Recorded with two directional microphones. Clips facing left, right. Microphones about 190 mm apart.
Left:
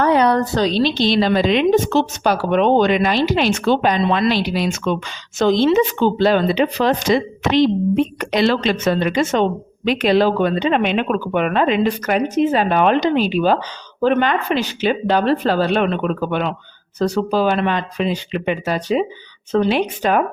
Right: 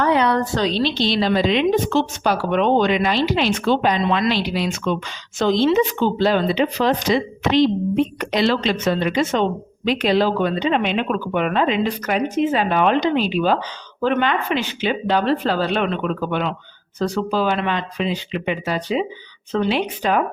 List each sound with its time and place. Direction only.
0.0 s speech: 40° left (ahead or behind)